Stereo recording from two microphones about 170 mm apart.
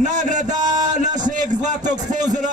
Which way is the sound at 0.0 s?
45° right (ahead or behind).